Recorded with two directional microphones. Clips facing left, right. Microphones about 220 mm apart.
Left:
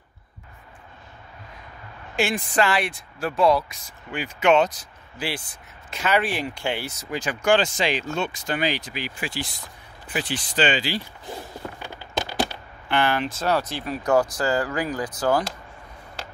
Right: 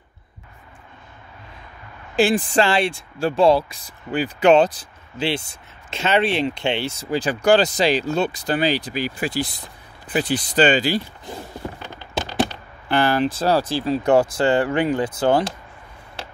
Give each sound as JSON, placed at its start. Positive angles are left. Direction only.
{"t": 2.1, "sound": "speech", "side_deg": -35}
{"t": 11.8, "sound": "a sound", "side_deg": 10}
{"t": 12.8, "sound": "speech", "side_deg": -35}